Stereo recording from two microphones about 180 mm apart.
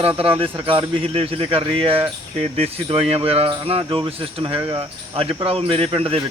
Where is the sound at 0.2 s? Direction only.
30° right (ahead or behind).